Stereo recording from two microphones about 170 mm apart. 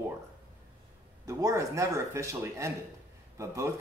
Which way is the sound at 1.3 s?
20° right (ahead or behind).